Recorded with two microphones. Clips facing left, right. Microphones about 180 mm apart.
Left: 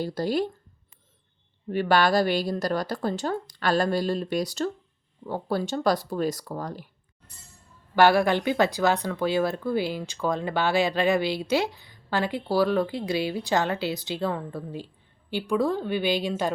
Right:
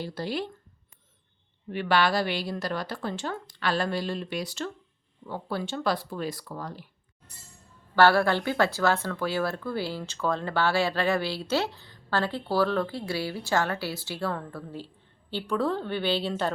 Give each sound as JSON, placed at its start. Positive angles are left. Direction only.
{"t": 0.0, "sound": "a woman's voice", "side_deg": 40}
{"t": 1.7, "sound": "a woman's voice", "side_deg": 40}
{"t": 7.9, "sound": "speech", "side_deg": 15}